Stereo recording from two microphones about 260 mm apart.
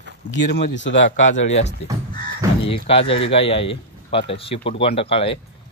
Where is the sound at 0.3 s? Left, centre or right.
Left.